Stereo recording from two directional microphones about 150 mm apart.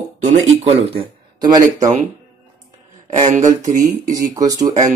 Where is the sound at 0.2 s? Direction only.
45° right (ahead or behind); by 1.9 s 25° right (ahead or behind).